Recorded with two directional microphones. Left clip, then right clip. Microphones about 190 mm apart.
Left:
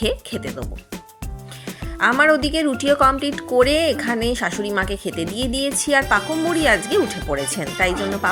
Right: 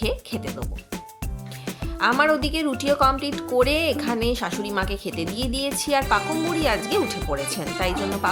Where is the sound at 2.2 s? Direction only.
10° left (ahead or behind).